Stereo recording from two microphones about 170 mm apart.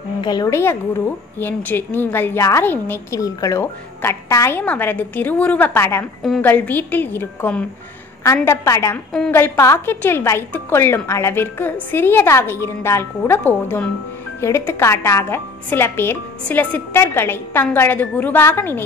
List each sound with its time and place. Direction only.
0.2 s a woman's voice: 25° left (ahead or behind)